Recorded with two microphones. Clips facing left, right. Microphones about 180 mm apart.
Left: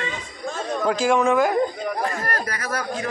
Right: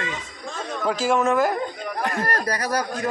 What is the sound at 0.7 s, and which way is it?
Speech, centre (ahead or behind).